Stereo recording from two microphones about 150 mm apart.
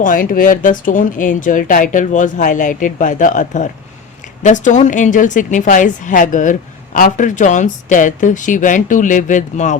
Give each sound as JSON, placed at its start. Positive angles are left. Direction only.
{"t": 0.0, "sound": "a woman's voice", "side_deg": 65}